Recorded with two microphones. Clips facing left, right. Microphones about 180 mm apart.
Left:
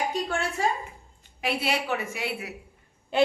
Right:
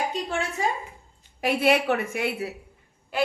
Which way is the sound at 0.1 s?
20° right (ahead or behind).